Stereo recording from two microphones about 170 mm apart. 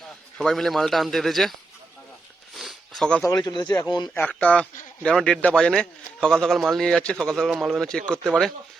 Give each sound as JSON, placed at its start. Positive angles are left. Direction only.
{"t": 0.3, "sound": "a man's voice", "side_deg": 0}
{"t": 2.6, "sound": "a sound", "side_deg": 0}
{"t": 3.2, "sound": "speech", "side_deg": 25}
{"t": 4.1, "sound": "a man's voice", "side_deg": 10}